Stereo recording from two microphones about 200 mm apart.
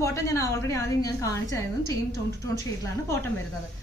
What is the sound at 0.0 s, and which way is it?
A woman's voice, 15° left (ahead or behind).